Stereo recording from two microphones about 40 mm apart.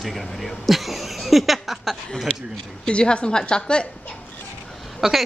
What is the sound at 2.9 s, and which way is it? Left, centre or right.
Speech, left.